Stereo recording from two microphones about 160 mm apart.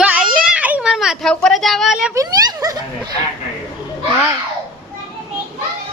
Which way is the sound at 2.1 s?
20° right (ahead or behind).